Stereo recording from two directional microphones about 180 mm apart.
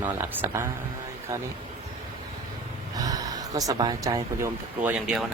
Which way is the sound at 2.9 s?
20° right (ahead or behind).